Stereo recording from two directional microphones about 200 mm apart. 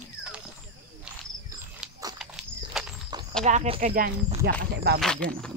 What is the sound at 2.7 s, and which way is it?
Walk, centre (ahead or behind).